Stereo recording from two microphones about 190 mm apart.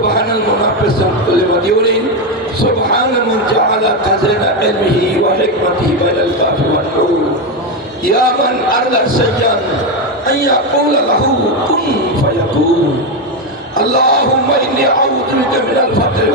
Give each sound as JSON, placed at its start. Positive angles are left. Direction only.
{"t": 13.7, "sound": "speech", "side_deg": 50}